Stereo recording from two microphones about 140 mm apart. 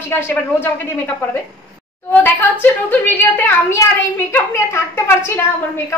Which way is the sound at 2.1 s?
15° left (ahead or behind).